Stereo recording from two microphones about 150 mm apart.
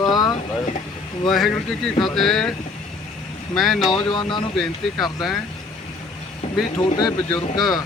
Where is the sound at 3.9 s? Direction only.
30° left (ahead or behind).